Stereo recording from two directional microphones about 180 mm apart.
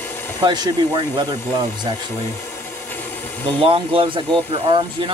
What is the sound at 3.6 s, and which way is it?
Speech, 30° right (ahead or behind).